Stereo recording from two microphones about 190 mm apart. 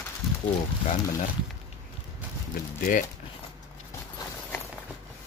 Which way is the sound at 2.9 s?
45° left (ahead or behind).